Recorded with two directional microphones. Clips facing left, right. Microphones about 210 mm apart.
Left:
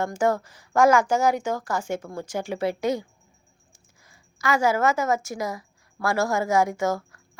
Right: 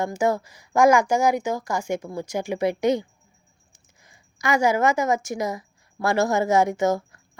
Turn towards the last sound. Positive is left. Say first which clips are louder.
# right 3 dB
turn(degrees=-20)  # may be behind; listen again after turning